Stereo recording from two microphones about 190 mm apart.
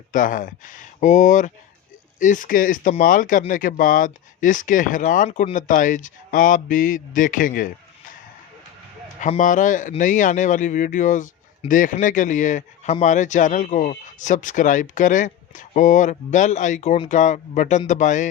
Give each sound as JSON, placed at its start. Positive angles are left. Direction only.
{"t": 0.1, "sound": "speech", "side_deg": 45}
{"t": 9.2, "sound": "a man's voice", "side_deg": 40}